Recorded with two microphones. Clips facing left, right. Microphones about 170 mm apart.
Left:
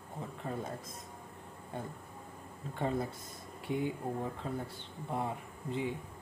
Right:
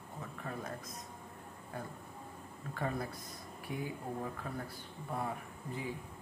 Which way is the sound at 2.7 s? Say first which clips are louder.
Left 4 dB; 25° left (ahead or behind).